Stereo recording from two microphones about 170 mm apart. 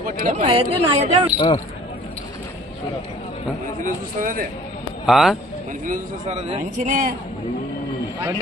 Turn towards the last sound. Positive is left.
turn(degrees=-45)  # may be behind; listen again after turning